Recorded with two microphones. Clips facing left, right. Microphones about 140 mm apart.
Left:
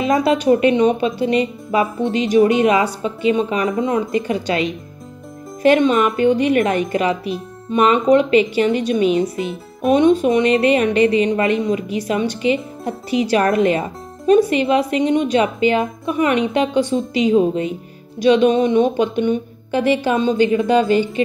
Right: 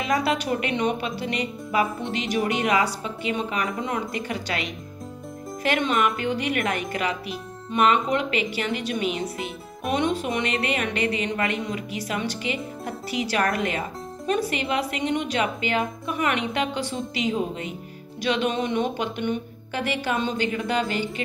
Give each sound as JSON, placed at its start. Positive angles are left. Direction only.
{"t": 0.0, "sound": "speech", "side_deg": 25}